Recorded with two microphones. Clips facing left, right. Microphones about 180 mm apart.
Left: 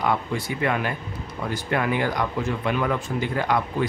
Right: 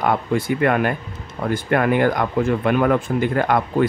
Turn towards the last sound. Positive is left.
turn(degrees=-55)  # may be behind; listen again after turning